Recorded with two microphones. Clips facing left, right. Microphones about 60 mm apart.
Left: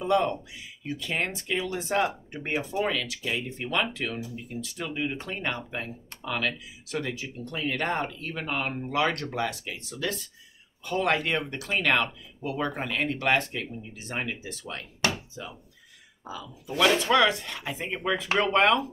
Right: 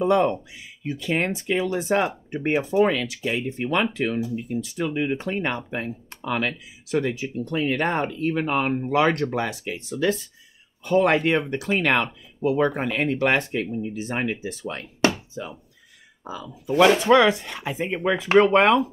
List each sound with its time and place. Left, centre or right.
0.1 s speech: right